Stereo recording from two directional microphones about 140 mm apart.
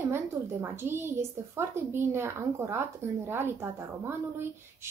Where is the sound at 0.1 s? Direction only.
15° right (ahead or behind).